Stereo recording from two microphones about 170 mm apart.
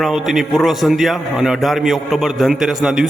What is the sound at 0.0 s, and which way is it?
A man's voice, centre (ahead or behind).